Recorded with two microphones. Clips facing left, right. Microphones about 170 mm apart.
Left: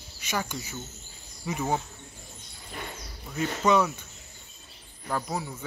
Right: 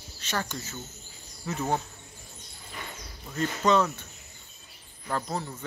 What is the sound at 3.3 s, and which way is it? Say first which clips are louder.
Speech: even; 10° left (ahead or behind).